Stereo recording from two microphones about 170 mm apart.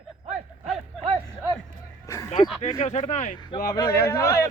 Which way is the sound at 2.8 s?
45° left (ahead or behind).